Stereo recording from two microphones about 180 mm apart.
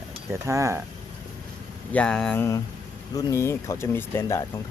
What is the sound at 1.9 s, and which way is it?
Speech, 5° left (ahead or behind).